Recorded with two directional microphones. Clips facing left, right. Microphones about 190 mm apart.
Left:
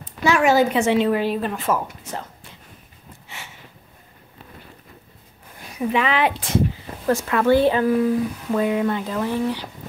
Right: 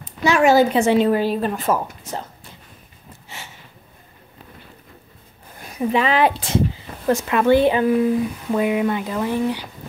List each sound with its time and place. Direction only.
0.2 s speech: 30° right (ahead or behind)
5.9 s speech: 35° right (ahead or behind)
7.1 s speech: 20° right (ahead or behind)